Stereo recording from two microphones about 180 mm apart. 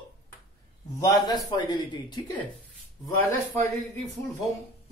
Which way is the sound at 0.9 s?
20° left (ahead or behind).